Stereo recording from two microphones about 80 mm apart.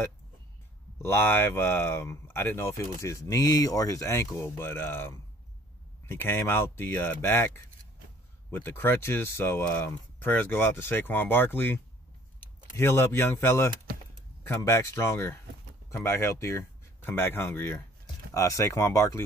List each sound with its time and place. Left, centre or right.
1.0 s speech: left
4.6 s speech: left
14.8 s speech: left
17.0 s speech: left
18.3 s speech: left